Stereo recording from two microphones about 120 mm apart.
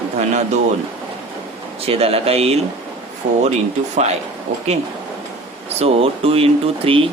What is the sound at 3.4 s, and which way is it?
Speech, 70° right (ahead or behind).